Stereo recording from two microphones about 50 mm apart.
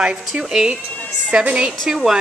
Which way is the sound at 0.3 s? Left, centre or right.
Centre.